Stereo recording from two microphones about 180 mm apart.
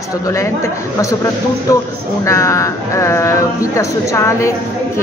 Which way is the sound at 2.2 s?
15° left (ahead or behind).